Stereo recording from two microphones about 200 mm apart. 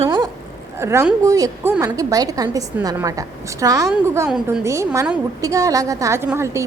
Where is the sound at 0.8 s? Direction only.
15° right (ahead or behind).